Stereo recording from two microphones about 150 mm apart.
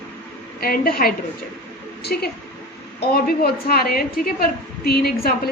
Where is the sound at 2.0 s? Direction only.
90° left.